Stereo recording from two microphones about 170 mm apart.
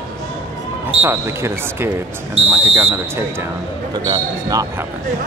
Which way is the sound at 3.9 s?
25° right (ahead or behind).